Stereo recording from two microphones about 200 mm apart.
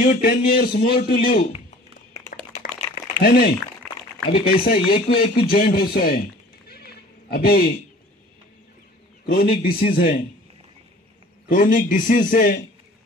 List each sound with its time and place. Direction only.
0.0 s a man's voice: 45° left (ahead or behind)
2.6 s a sound: 45° left (ahead or behind)
4.3 s a man's voice: 50° left (ahead or behind)
6.7 s neigh: 50° left (ahead or behind)
9.2 s a man's voice: 50° left (ahead or behind)
11.4 s a man's voice: 40° left (ahead or behind)